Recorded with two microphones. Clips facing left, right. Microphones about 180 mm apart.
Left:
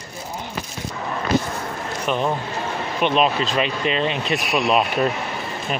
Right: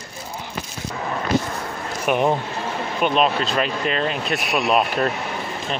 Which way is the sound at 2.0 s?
15° right (ahead or behind).